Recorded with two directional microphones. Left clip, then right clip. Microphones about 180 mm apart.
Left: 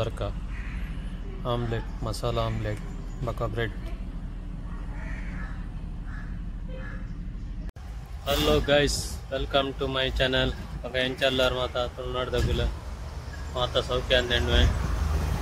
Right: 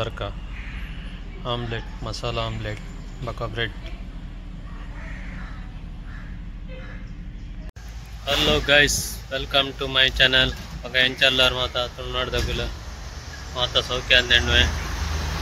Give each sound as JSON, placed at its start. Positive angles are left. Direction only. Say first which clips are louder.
{"t": 1.4, "sound": "speech", "louder": "right 2 dB", "side_deg": 10}
{"t": 3.3, "sound": "a man's voice", "louder": "right 1 dB", "side_deg": -5}
{"t": 8.3, "sound": "speech", "louder": "right 4 dB", "side_deg": 10}